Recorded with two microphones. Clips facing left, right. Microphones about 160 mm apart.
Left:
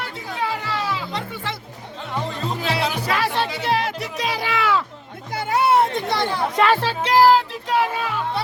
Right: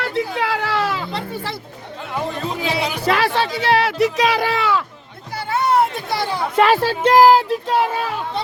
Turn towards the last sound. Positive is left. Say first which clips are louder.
# right 3 dB
turn(degrees=-45)  # may be behind; listen again after turning